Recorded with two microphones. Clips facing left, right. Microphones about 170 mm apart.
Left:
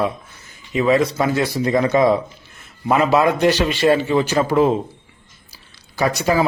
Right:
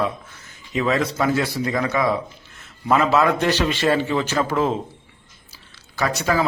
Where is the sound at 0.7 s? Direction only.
10° left (ahead or behind).